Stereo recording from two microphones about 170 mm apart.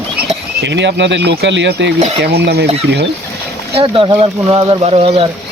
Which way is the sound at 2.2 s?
75° right (ahead or behind).